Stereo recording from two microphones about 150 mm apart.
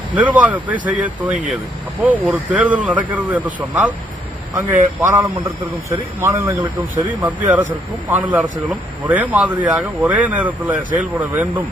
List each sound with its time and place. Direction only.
0.1 s speech: 10° right (ahead or behind)
4.9 s speech: 15° right (ahead or behind)